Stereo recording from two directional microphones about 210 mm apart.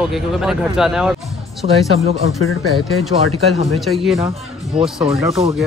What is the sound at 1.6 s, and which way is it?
Speech, 30° right (ahead or behind).